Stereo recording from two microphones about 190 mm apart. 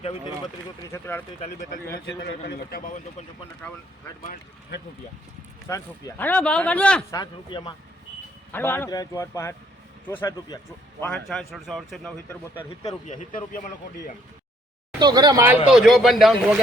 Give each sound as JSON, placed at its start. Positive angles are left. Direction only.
{"t": 0.0, "sound": "speech", "side_deg": 30}
{"t": 0.8, "sound": "speech", "side_deg": 15}
{"t": 2.0, "sound": "a man's voice", "side_deg": 60}
{"t": 5.6, "sound": "speech", "side_deg": 15}
{"t": 7.1, "sound": "speech", "side_deg": 20}
{"t": 8.5, "sound": "speech", "side_deg": 10}
{"t": 11.0, "sound": "a man's voice", "side_deg": 5}
{"t": 13.1, "sound": "speech", "side_deg": 40}
{"t": 14.9, "sound": "speech", "side_deg": -20}